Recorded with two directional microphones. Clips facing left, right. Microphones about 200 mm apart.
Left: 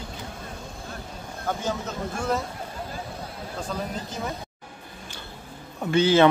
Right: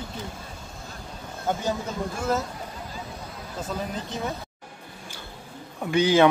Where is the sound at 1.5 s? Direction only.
20° right (ahead or behind).